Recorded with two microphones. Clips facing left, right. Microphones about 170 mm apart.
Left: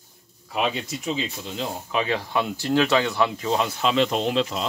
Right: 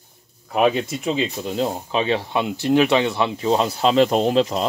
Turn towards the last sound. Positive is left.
turn(degrees=-40)  # may be behind; listen again after turning